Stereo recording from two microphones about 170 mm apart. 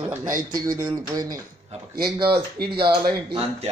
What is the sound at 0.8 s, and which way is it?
Speech, 25° right (ahead or behind).